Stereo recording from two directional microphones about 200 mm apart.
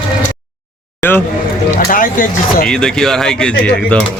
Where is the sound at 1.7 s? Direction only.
45° left (ahead or behind).